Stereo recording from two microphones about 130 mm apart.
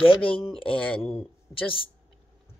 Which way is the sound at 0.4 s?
45° left (ahead or behind).